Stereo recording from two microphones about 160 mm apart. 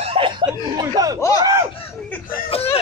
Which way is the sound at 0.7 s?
25° right (ahead or behind).